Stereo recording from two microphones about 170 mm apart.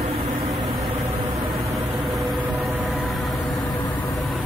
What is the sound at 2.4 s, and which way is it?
Vehicle, 10° right (ahead or behind).